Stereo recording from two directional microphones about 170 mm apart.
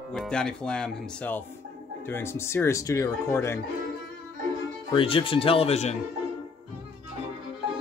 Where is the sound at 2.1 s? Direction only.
15° left (ahead or behind).